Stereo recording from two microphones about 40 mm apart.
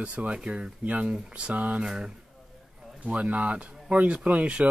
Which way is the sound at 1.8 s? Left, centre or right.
Centre.